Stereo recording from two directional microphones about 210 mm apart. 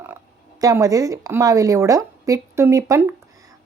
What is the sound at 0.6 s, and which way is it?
A woman's voice, 15° right (ahead or behind).